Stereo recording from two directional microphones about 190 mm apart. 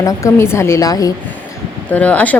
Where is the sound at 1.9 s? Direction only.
10° left (ahead or behind).